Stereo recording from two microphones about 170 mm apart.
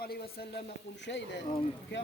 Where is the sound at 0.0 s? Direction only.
65° left (ahead or behind).